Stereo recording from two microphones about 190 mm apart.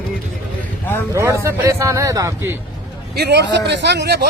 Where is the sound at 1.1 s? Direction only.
15° right (ahead or behind).